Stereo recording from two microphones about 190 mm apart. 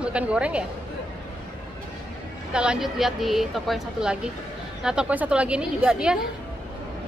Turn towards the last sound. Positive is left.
turn(degrees=-5)  # may be behind; listen again after turning